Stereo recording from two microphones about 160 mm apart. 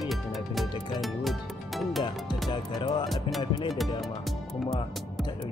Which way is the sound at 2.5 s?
30° left (ahead or behind).